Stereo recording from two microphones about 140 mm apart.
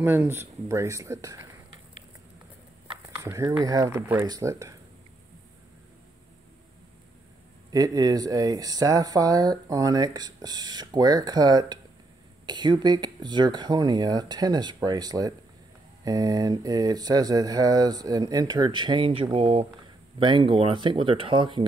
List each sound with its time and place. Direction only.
0.0 s speech: 15° right (ahead or behind)
3.2 s speech: 20° right (ahead or behind)
7.7 s speech: 25° right (ahead or behind)